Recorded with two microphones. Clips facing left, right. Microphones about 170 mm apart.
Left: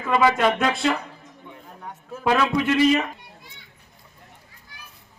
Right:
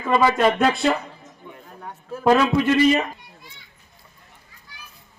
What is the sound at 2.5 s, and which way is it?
Speech, 5° right (ahead or behind).